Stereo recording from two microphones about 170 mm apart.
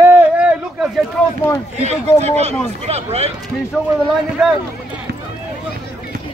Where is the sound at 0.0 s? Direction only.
15° right (ahead or behind).